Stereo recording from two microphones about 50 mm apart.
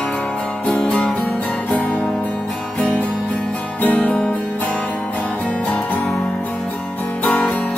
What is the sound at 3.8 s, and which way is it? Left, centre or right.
Music, left.